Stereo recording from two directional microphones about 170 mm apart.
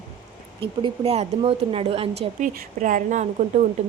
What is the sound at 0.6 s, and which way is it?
A woman's voice, 35° right (ahead or behind).